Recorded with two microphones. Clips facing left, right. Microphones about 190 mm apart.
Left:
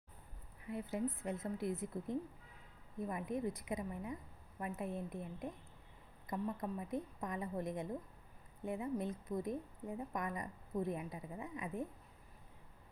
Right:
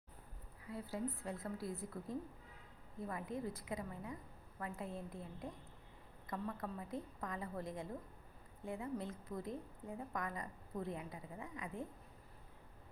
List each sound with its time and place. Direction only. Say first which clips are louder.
0.6 s a woman's voice: left 3 dB; 20° left (ahead or behind)